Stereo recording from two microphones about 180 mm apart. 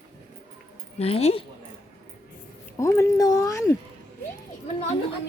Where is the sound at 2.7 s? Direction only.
15° left (ahead or behind).